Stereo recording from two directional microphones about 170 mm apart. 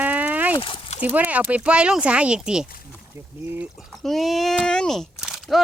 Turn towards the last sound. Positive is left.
turn(degrees=0)  # may be behind; listen again after turning